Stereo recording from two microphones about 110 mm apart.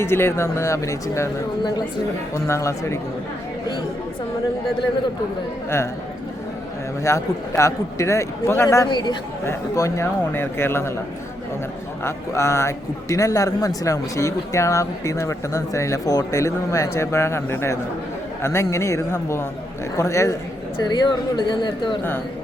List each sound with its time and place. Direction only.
0.0 s a man's voice: 20° left (ahead or behind)
2.3 s a man's voice: 25° left (ahead or behind)
7.0 s a man's voice: 25° left (ahead or behind)
8.9 s a man's voice: 40° left (ahead or behind)
9.4 s a man's voice: 25° left (ahead or behind)
12.0 s a man's voice: 25° left (ahead or behind)
20.8 s speech: 40° left (ahead or behind)